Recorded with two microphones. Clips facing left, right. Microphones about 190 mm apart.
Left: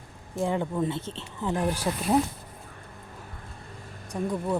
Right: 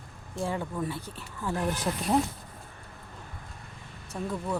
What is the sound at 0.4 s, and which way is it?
Speech, 20° left (ahead or behind).